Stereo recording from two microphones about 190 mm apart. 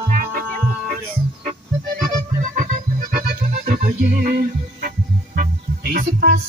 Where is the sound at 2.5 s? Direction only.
50° right (ahead or behind).